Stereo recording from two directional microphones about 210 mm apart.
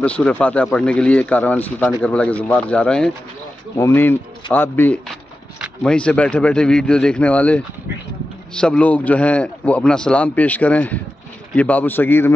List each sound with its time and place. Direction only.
0.0 s a man's voice: 5° left (ahead or behind)